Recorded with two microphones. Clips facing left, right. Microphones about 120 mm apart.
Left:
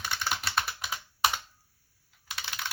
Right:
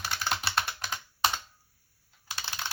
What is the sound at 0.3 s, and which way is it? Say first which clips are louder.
Computer keyboard: right 1 dB; centre (ahead or behind).